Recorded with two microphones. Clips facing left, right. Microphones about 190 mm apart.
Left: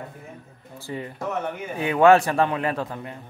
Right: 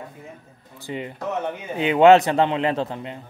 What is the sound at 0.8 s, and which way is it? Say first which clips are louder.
A man's voice: right 2 dB; 20° right (ahead or behind).